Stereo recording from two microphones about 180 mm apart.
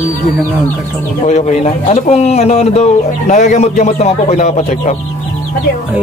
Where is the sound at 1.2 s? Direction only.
40° left (ahead or behind).